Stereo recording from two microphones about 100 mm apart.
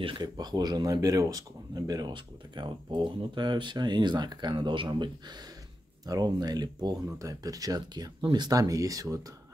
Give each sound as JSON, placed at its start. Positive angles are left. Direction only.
{"t": 0.0, "sound": "speech", "side_deg": -50}